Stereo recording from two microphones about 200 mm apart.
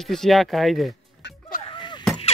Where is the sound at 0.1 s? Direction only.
Centre (ahead or behind).